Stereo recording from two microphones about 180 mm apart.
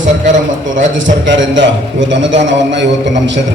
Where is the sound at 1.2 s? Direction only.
90° right.